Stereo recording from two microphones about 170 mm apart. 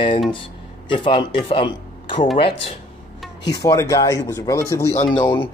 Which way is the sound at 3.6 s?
20° left (ahead or behind).